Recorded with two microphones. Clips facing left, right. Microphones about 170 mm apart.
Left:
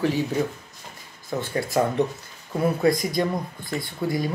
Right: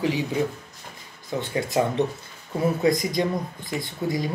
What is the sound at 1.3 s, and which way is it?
Speech, 20° right (ahead or behind).